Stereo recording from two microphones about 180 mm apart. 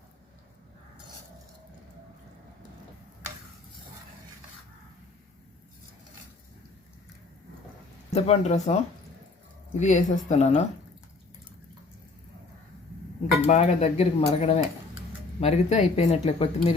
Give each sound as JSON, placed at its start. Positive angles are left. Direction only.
{"t": 8.1, "sound": "speech", "side_deg": 35}
{"t": 9.8, "sound": "speech", "side_deg": 40}
{"t": 13.5, "sound": "speech", "side_deg": 35}